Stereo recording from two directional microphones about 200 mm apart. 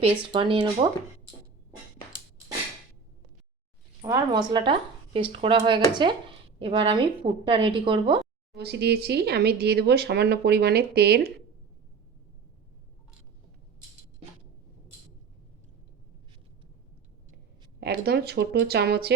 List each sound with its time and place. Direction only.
0.0 s speech: 25° right (ahead or behind)
4.0 s speech: 20° right (ahead or behind)
8.5 s speech: 55° right (ahead or behind)
17.7 s speech: 55° right (ahead or behind)